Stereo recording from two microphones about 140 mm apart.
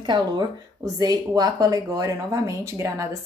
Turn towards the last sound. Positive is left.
turn(degrees=-20)  # may be behind; listen again after turning